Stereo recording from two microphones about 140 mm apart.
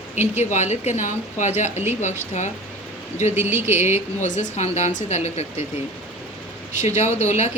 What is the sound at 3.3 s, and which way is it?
Speech, 15° right (ahead or behind).